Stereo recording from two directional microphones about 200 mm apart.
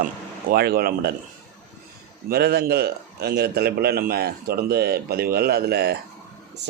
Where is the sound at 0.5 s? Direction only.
50° right (ahead or behind).